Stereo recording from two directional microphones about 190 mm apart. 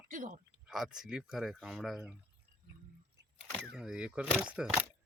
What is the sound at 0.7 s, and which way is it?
Speech, centre (ahead or behind).